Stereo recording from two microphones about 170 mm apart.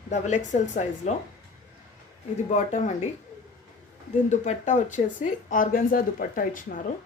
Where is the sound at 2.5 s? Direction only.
45° left (ahead or behind).